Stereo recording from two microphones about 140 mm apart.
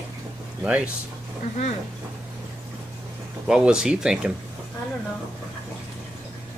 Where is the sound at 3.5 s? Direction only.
5° right (ahead or behind).